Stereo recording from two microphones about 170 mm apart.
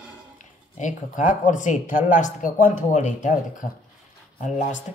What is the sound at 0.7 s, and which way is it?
Speech, 45° left (ahead or behind).